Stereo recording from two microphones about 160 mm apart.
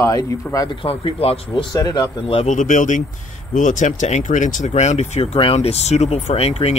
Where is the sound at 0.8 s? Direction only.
35° left (ahead or behind).